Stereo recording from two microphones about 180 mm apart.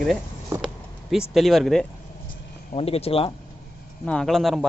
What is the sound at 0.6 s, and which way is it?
Vehicle, centre (ahead or behind).